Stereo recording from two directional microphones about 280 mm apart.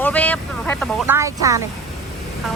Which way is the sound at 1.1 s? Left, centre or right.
Centre.